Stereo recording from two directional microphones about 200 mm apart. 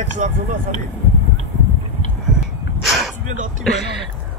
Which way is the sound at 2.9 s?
Centre (ahead or behind).